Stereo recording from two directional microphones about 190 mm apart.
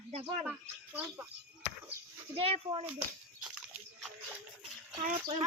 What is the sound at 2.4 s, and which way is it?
Speech, 30° right (ahead or behind).